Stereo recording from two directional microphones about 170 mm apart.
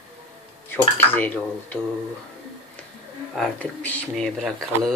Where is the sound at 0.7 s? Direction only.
10° left (ahead or behind).